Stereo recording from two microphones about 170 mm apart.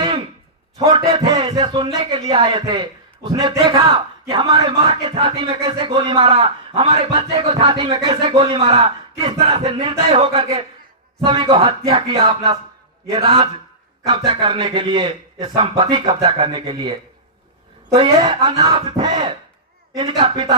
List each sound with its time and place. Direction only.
0.8 s a man's voice: 35° right (ahead or behind)